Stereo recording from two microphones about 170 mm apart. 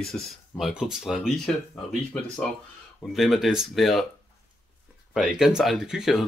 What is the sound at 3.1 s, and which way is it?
Speech, centre (ahead or behind).